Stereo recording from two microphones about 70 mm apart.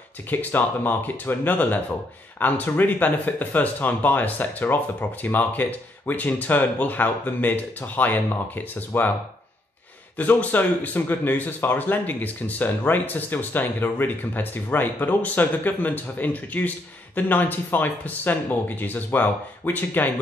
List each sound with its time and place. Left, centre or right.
0.3 s speech: left
10.1 s speech: left